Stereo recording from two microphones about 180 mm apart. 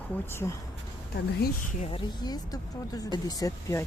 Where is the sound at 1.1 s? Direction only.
60° left (ahead or behind).